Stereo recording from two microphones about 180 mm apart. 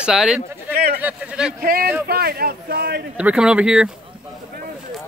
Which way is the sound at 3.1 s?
5° right (ahead or behind).